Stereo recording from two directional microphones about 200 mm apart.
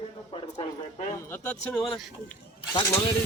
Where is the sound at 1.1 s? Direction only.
10° left (ahead or behind).